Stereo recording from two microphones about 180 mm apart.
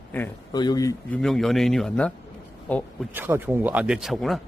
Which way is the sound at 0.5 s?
25° left (ahead or behind).